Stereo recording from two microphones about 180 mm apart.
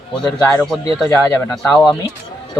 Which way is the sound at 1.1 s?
15° left (ahead or behind).